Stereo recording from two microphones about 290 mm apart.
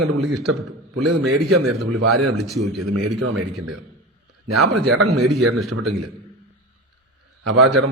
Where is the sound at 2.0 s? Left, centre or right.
Right.